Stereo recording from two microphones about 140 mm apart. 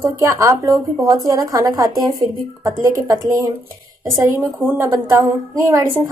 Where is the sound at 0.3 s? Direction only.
20° right (ahead or behind).